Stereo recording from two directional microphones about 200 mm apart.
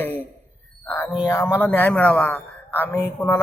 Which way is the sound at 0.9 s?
10° left (ahead or behind).